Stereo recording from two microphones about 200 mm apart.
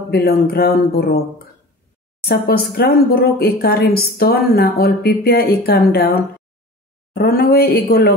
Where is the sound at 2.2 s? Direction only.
50° left (ahead or behind).